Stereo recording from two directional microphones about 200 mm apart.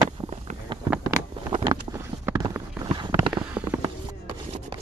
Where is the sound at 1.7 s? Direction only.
15° right (ahead or behind).